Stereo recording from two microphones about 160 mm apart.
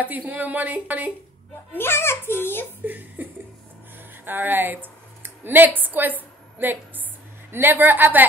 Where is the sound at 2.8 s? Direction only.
10° right (ahead or behind).